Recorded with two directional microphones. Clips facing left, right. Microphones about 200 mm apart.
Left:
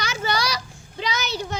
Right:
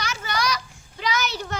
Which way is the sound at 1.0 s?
20° left (ahead or behind).